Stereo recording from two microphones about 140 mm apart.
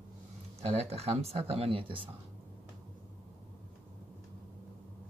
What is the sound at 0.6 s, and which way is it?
Speech, 45° right (ahead or behind).